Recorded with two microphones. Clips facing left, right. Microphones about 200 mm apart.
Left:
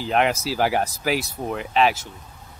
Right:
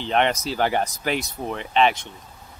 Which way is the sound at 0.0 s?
5° left (ahead or behind).